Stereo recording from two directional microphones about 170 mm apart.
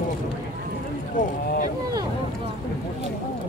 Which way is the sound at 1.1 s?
55° left (ahead or behind).